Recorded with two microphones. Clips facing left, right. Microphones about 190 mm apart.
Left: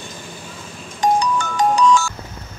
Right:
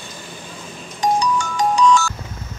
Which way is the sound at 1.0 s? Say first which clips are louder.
Left 1 dB; 55° left (ahead or behind).